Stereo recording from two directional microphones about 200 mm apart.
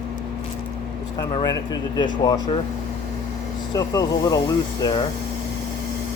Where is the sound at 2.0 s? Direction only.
20° left (ahead or behind).